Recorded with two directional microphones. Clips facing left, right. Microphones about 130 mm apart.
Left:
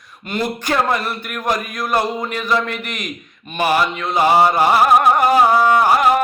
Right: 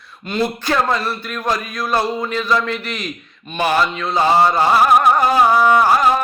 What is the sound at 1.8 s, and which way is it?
Mantra, 20° left (ahead or behind).